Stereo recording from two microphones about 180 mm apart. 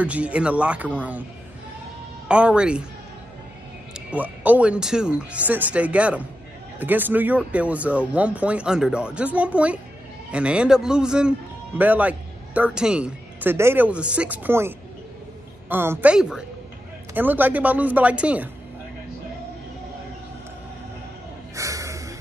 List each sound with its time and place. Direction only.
0.0 s speech: 5° right (ahead or behind)
2.2 s a man's voice: 5° right (ahead or behind)
3.9 s a man's voice: 10° right (ahead or behind)
15.7 s speech: 10° right (ahead or behind)
21.5 s music: 15° right (ahead or behind)